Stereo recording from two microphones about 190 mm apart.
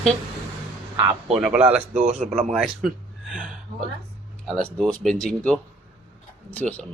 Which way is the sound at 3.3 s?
5° right (ahead or behind).